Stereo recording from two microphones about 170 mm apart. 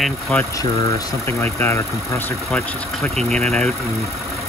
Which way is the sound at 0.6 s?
15° left (ahead or behind).